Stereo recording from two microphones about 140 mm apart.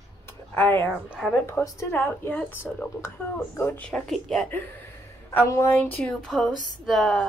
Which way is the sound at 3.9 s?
5° left (ahead or behind).